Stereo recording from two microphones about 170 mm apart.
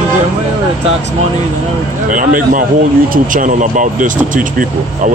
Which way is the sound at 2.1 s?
50° right (ahead or behind).